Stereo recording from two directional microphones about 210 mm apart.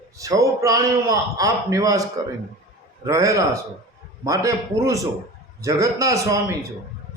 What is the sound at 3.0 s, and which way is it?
A man's voice, 15° right (ahead or behind).